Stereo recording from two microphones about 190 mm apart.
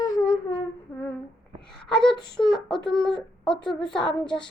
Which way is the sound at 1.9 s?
Centre (ahead or behind).